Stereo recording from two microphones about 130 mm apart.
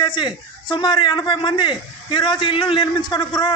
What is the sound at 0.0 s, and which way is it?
Speech, 35° left (ahead or behind).